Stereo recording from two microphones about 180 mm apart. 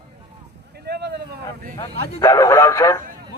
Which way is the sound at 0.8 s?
65° right (ahead or behind).